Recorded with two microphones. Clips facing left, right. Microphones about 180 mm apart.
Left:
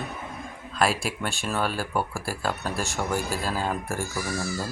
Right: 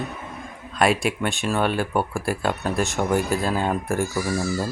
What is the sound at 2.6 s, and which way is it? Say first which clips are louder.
Speech: right 6 dB; 20° right (ahead or behind).